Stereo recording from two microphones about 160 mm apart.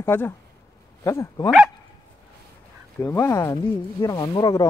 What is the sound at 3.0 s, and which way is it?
Speech, 15° left (ahead or behind).